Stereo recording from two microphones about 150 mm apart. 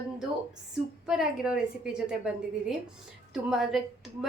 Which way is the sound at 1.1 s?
5° right (ahead or behind).